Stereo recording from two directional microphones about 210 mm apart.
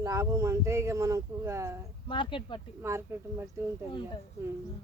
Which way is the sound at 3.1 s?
10° right (ahead or behind).